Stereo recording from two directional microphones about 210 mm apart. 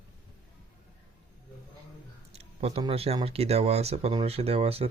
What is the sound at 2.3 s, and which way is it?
Speech, 30° right (ahead or behind).